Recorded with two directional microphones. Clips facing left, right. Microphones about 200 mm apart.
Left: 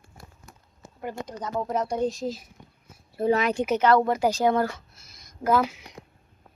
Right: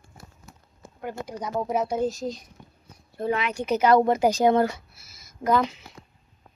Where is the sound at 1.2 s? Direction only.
10° right (ahead or behind).